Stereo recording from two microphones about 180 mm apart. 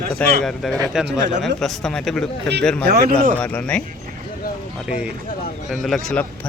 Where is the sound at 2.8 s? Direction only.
65° right (ahead or behind).